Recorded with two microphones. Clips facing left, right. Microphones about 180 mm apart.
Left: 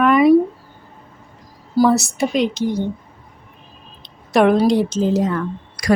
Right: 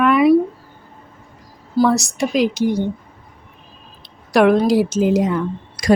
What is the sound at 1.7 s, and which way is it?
A woman's voice, 5° left (ahead or behind).